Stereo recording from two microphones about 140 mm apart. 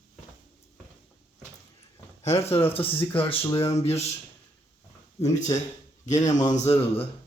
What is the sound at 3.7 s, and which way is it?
Speech, 50° left (ahead or behind).